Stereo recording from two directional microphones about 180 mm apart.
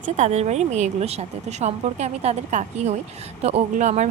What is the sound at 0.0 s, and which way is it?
A woman's voice, 40° right (ahead or behind).